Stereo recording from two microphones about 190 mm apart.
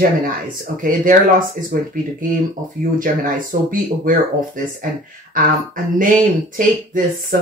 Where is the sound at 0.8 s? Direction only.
45° right (ahead or behind).